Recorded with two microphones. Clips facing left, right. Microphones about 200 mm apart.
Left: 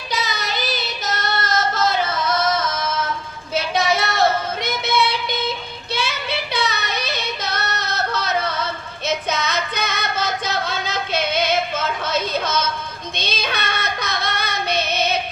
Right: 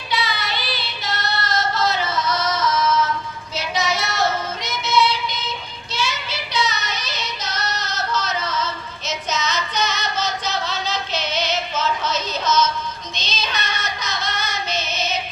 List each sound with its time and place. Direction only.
0.1 s child singing: 40° left (ahead or behind)
3.5 s music: 55° left (ahead or behind)
5.9 s child singing: 60° left (ahead or behind)
13.1 s female singing: 55° left (ahead or behind)